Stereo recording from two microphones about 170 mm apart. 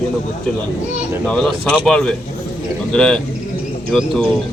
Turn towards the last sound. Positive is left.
turn(degrees=0)  # may be behind; listen again after turning